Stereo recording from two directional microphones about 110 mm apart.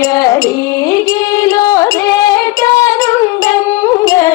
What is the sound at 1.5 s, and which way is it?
Music, 35° left (ahead or behind).